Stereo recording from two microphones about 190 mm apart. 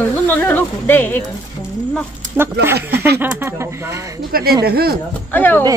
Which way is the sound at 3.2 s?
15° right (ahead or behind).